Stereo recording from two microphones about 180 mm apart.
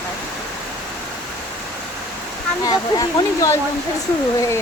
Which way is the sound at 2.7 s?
20° left (ahead or behind).